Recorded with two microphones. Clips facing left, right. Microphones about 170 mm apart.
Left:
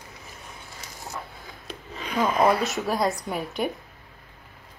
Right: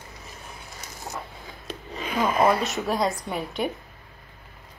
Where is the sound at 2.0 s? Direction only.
5° right (ahead or behind).